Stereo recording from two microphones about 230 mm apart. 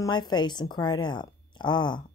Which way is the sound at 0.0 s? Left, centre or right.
Centre.